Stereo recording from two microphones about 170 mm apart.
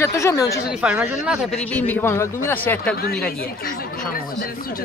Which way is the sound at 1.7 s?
10° left (ahead or behind).